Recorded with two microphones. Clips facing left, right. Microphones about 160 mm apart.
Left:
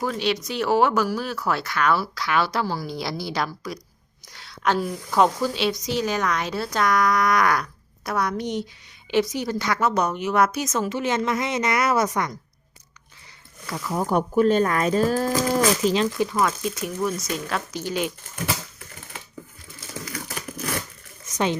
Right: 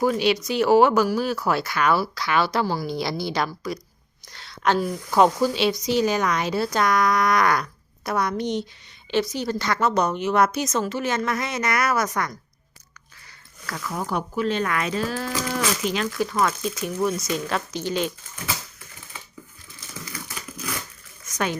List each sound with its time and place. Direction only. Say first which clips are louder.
0.0 s a woman's voice: right 4 dB; 10° right (ahead or behind); by 12.0 s 25° left (ahead or behind)
13.7 s speech: left 3 dB; 20° left (ahead or behind)
14.1 s speech: left 7 dB; 45° left (ahead or behind); by 16.4 s 20° left (ahead or behind)
17.0 s speech: right 3 dB; centre (ahead or behind)
20.5 s crushing: left 4 dB; 50° left (ahead or behind)
21.3 s a woman's voice: left 3 dB; 25° left (ahead or behind)